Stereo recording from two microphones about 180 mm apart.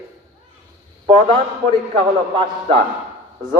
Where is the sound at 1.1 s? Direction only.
30° right (ahead or behind).